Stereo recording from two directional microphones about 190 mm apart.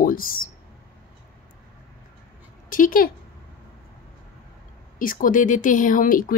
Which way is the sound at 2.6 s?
45° left (ahead or behind).